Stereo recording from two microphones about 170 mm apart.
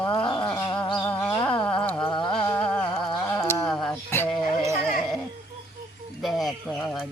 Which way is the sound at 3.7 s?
Centre (ahead or behind).